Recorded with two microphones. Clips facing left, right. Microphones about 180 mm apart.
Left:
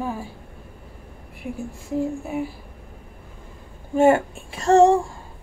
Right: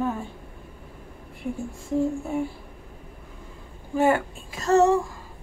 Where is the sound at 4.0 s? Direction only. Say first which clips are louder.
Left 5 dB; 25° left (ahead or behind).